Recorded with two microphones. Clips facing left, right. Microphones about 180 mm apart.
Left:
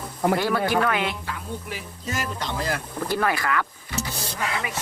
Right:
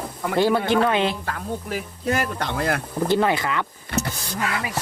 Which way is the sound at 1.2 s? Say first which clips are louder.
Right 4 dB; 50° right (ahead or behind).